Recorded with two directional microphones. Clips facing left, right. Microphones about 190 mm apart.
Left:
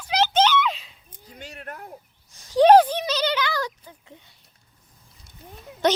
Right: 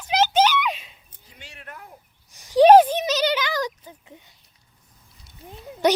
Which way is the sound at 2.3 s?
15° right (ahead or behind).